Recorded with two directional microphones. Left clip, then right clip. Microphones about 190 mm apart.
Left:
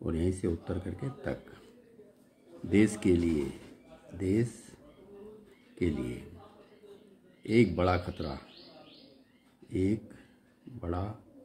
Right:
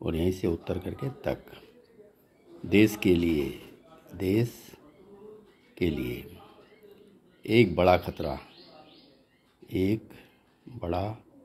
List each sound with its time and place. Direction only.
0.0 s speech: 15° right (ahead or behind)
2.7 s speech: 15° right (ahead or behind)
5.8 s speech: 15° right (ahead or behind)
7.4 s speech: 15° right (ahead or behind)
9.7 s speech: 15° right (ahead or behind)